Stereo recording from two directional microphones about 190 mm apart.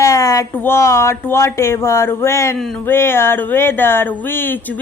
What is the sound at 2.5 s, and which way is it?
Speech, 5° left (ahead or behind).